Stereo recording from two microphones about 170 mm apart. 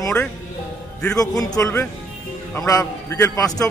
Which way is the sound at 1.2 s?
20° left (ahead or behind).